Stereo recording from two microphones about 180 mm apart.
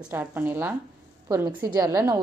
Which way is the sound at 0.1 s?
10° right (ahead or behind).